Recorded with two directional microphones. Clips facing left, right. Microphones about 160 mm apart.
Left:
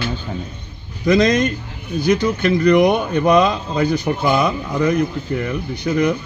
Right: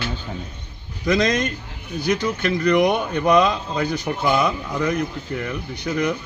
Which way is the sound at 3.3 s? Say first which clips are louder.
Left 1 dB; 20° left (ahead or behind).